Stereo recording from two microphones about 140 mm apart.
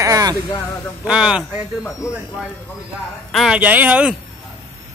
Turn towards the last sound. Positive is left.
turn(degrees=-10)  # may be behind; listen again after turning